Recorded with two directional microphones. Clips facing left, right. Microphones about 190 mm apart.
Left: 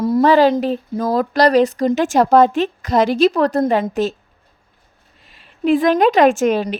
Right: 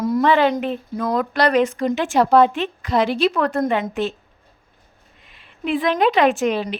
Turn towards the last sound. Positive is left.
turn(degrees=45)  # may be behind; listen again after turning